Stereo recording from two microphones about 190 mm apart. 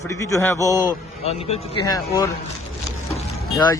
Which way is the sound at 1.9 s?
20° left (ahead or behind).